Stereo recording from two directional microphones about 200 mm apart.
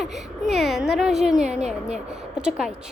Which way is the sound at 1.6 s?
35° right (ahead or behind).